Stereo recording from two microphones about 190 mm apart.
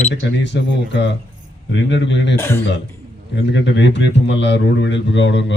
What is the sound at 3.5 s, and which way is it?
Speech, 70° left (ahead or behind).